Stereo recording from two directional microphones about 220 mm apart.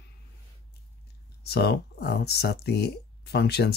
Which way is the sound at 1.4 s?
45° left (ahead or behind).